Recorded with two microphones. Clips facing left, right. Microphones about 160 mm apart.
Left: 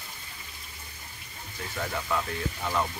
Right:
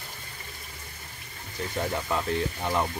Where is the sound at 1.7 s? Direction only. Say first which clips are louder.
Right 2 dB; 20° right (ahead or behind).